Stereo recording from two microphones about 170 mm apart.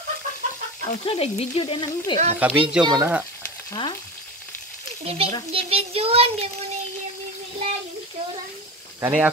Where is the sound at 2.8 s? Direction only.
25° right (ahead or behind).